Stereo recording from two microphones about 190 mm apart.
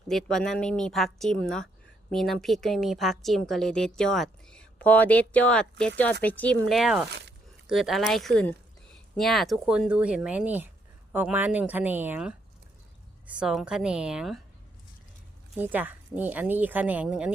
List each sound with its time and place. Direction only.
0.1 s a woman's voice: centre (ahead or behind)
7.1 s a sound: 60° right (ahead or behind)
7.7 s a woman's voice: centre (ahead or behind)
15.5 s speech: 10° right (ahead or behind)